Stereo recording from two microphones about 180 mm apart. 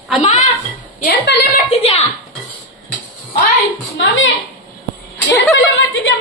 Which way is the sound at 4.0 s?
90° left.